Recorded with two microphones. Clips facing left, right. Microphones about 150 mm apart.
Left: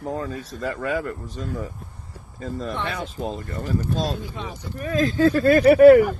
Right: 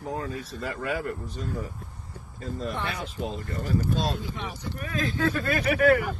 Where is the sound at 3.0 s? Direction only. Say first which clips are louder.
Left 3 dB; 40° left (ahead or behind).